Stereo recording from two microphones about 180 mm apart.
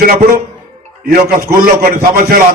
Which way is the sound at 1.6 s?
55° right (ahead or behind).